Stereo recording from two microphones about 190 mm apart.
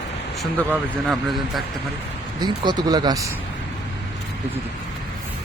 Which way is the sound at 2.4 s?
20° right (ahead or behind).